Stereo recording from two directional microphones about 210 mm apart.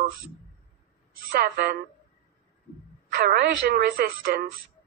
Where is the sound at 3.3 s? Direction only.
50° right (ahead or behind).